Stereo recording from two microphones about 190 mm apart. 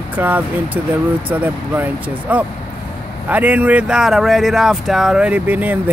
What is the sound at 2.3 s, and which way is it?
Speech, 10° right (ahead or behind).